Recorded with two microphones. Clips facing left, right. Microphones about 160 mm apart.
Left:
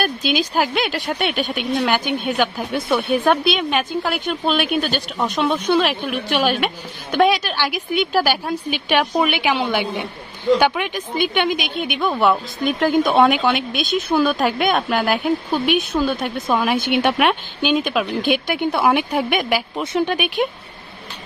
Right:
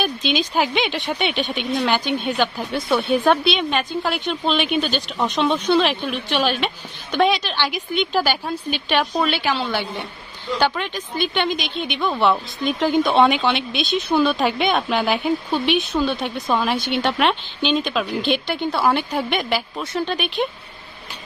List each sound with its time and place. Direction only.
0.0 s a woman's voice: 5° left (ahead or behind)